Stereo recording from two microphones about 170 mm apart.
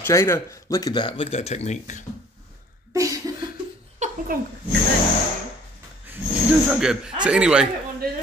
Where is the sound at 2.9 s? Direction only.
20° right (ahead or behind).